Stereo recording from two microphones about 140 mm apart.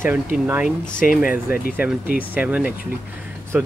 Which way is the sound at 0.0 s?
15° right (ahead or behind).